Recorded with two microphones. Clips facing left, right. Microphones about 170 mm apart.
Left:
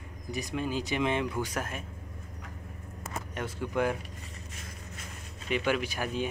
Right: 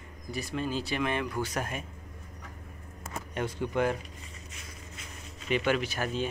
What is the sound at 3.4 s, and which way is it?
Speech, 5° left (ahead or behind).